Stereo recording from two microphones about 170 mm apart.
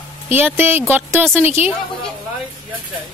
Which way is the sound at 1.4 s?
40° left (ahead or behind).